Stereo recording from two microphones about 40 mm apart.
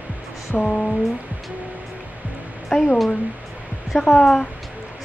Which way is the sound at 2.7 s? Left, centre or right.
Centre.